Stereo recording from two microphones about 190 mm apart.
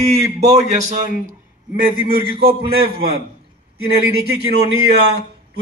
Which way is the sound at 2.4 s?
55° right (ahead or behind).